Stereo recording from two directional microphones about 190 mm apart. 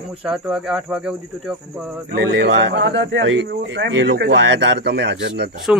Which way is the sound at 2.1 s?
65° right (ahead or behind).